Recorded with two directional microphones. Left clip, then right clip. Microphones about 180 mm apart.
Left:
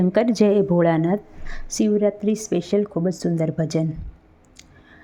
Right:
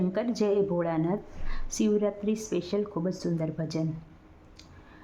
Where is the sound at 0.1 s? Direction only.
35° left (ahead or behind).